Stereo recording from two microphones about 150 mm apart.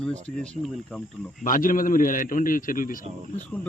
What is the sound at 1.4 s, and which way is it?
A man's voice, 65° left (ahead or behind).